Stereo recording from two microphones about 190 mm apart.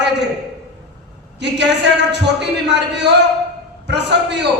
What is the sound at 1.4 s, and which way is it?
A man's voice, 65° right (ahead or behind).